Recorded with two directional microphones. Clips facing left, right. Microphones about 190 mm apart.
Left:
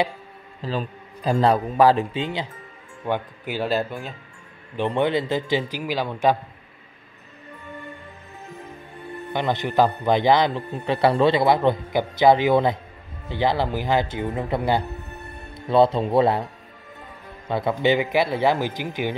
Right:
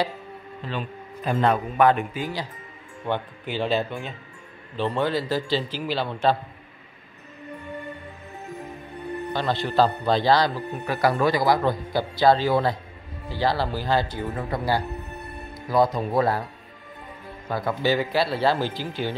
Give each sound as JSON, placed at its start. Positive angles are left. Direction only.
{"t": 0.6, "sound": "a man's voice", "side_deg": 35}
{"t": 3.1, "sound": "speech", "side_deg": 10}
{"t": 4.7, "sound": "a man's voice", "side_deg": 20}
{"t": 9.3, "sound": "a man's voice", "side_deg": 20}
{"t": 17.5, "sound": "a man's voice", "side_deg": 25}